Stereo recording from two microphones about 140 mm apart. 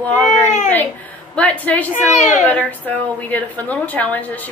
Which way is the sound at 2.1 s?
55° left (ahead or behind).